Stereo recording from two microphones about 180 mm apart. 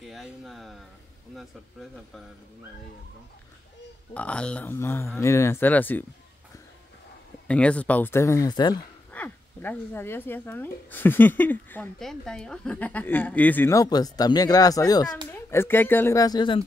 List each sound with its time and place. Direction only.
0.1 s speech: centre (ahead or behind)
4.1 s speech: 5° left (ahead or behind)
7.4 s speech: 5° left (ahead or behind); by 8.7 s 20° left (ahead or behind)
9.1 s speech: 10° left (ahead or behind); by 16.6 s 25° left (ahead or behind)